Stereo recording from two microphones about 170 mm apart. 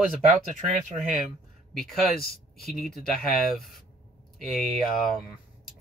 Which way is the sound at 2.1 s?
65° left (ahead or behind).